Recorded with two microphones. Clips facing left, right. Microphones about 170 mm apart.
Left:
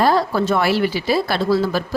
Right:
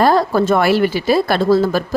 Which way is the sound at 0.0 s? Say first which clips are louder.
Right 3 dB; 50° right (ahead or behind).